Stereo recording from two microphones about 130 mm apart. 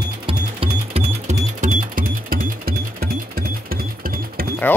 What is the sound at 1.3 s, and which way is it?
Music, 75° right (ahead or behind).